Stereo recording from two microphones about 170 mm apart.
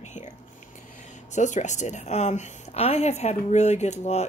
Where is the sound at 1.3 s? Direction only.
45° left (ahead or behind).